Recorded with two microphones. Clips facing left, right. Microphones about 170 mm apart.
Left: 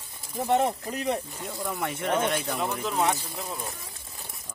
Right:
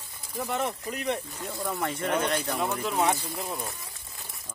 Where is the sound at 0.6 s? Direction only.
40° left (ahead or behind).